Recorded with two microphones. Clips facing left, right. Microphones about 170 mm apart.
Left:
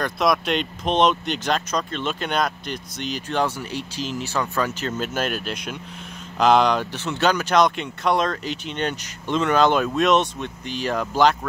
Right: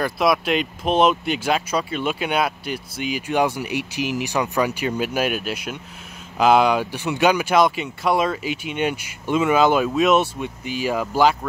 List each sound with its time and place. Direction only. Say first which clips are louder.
0.0 s speech: right 2 dB; 5° right (ahead or behind)